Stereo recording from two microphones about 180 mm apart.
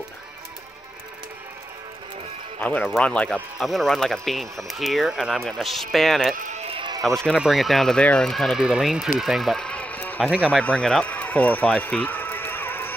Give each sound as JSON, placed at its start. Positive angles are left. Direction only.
{"t": 2.6, "sound": "speech", "side_deg": 5}
{"t": 6.6, "sound": "a sound", "side_deg": -30}
{"t": 7.2, "sound": "speech", "side_deg": 0}